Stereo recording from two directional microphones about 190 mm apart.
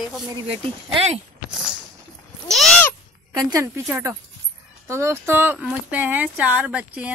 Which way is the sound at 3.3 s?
20° right (ahead or behind).